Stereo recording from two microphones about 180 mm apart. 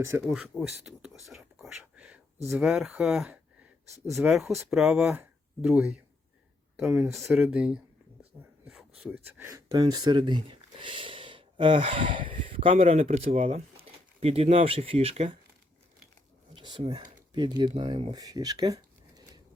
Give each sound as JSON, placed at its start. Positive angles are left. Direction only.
{"t": 0.3, "sound": "speech", "side_deg": -5}
{"t": 1.0, "sound": "whispering", "side_deg": 0}
{"t": 2.5, "sound": "speech", "side_deg": -5}
{"t": 8.6, "sound": "a sound", "side_deg": 0}
{"t": 9.0, "sound": "speech", "side_deg": -10}
{"t": 16.6, "sound": "speech", "side_deg": -25}